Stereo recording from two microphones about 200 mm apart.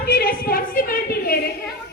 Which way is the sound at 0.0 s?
50° left (ahead or behind).